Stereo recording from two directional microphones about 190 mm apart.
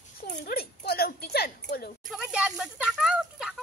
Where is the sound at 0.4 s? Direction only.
55° left (ahead or behind).